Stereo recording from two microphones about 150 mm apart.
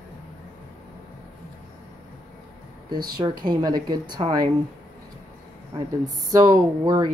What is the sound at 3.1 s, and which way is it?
Speech, 30° right (ahead or behind).